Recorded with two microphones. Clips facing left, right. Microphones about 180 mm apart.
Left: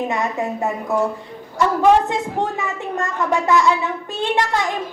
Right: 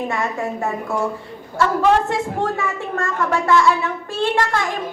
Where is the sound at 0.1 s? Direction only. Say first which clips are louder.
Left 1 dB; 20° left (ahead or behind).